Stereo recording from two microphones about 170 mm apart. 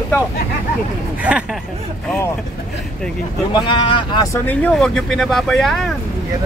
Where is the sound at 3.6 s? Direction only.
30° left (ahead or behind).